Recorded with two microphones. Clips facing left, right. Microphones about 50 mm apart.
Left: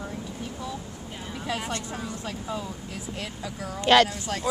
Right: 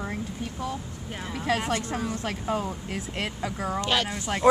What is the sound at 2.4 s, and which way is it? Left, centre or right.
Speech, right.